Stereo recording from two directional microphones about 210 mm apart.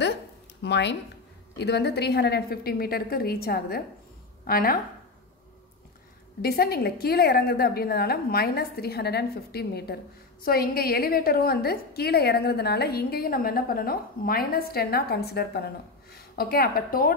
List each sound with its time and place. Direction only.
0.6 s a woman's voice: 55° left (ahead or behind)
6.4 s a woman's voice: 45° left (ahead or behind)